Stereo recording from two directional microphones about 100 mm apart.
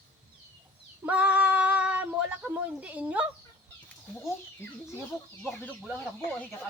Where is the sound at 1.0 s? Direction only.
15° right (ahead or behind).